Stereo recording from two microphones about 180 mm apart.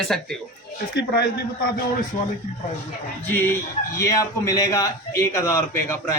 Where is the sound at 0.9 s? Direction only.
65° left (ahead or behind).